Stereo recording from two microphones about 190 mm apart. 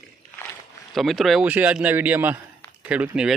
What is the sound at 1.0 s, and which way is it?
A man's voice, centre (ahead or behind).